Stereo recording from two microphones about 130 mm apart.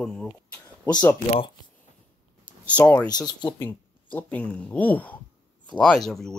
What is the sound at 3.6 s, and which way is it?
Speech, 15° left (ahead or behind).